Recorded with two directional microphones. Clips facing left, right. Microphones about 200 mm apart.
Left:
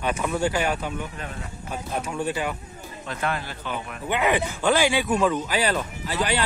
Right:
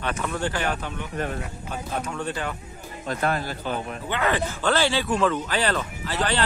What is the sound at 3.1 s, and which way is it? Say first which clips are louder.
Speech: right 3 dB; 40° right (ahead or behind).